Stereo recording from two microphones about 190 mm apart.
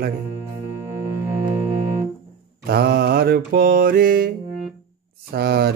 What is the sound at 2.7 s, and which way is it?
Mantra, 55° right (ahead or behind).